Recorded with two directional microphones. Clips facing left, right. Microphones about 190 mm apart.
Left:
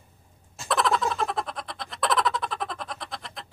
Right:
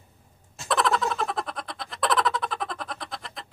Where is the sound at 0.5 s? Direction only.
Centre (ahead or behind).